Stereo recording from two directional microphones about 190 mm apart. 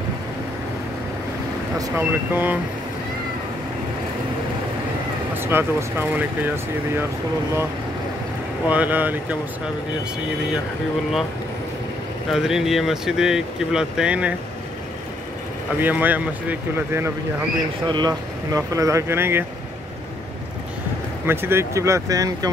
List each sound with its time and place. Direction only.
1.8 s speech: 10° right (ahead or behind)
5.3 s speech: 10° right (ahead or behind)
8.6 s speech: 10° right (ahead or behind)
12.3 s speech: 5° right (ahead or behind)
15.8 s speech: 10° right (ahead or behind)
17.8 s speech: 20° right (ahead or behind)
21.3 s speech: 10° right (ahead or behind)